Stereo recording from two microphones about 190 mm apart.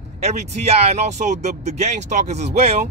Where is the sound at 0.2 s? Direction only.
35° right (ahead or behind).